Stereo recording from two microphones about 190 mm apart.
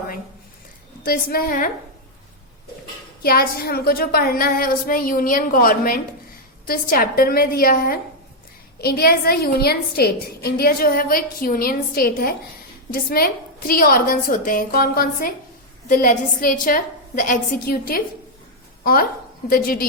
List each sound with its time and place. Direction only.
1.0 s a woman's voice: 50° left (ahead or behind)
3.2 s a woman's voice: 55° left (ahead or behind)
19.5 s a woman's voice: 50° left (ahead or behind)